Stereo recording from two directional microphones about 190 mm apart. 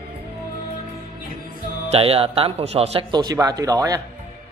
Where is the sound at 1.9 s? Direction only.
30° right (ahead or behind).